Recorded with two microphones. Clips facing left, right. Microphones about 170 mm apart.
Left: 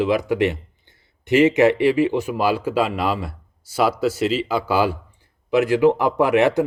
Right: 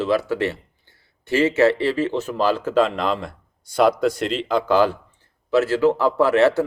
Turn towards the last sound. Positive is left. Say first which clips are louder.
# even
turn(degrees=15)  # may be behind; listen again after turning